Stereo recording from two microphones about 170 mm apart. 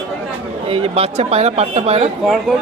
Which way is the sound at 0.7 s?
35° right (ahead or behind).